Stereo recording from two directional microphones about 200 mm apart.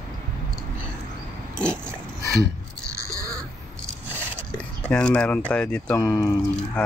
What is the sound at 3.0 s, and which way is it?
Crow, 15° right (ahead or behind).